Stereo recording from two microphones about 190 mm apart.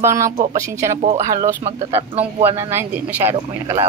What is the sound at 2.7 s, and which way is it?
Speech, 10° right (ahead or behind).